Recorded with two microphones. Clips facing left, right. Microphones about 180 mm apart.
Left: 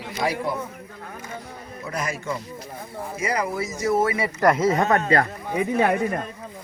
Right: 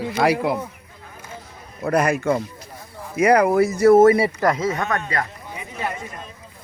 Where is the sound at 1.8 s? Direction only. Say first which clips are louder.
Right 11 dB; 60° right (ahead or behind); by 4.3 s 35° right (ahead or behind).